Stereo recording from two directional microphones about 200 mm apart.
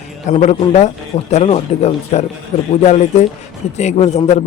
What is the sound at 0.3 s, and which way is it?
A man's voice, 35° left (ahead or behind).